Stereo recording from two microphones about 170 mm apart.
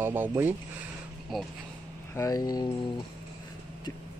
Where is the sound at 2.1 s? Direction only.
20° left (ahead or behind).